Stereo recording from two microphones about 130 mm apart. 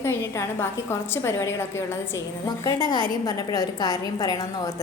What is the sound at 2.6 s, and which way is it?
A woman's voice, 30° left (ahead or behind).